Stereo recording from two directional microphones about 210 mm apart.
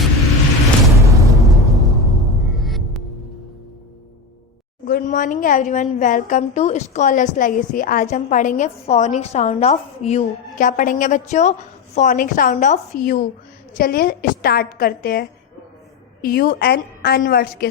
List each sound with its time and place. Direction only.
0.9 s a sound: 15° right (ahead or behind)
1.5 s music: centre (ahead or behind)
4.9 s a woman's voice: 40° left (ahead or behind)